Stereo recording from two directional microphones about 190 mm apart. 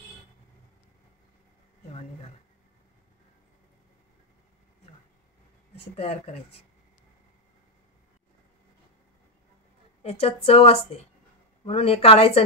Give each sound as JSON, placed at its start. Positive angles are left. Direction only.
{"t": 1.9, "sound": "a sound", "side_deg": 35}
{"t": 5.8, "sound": "a woman's voice", "side_deg": 30}
{"t": 10.0, "sound": "a woman's voice", "side_deg": 30}